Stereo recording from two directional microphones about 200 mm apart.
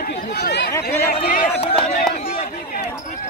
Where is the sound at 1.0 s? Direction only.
40° left (ahead or behind).